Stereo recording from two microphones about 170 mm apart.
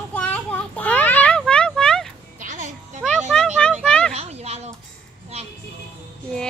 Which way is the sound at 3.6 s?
5° left (ahead or behind).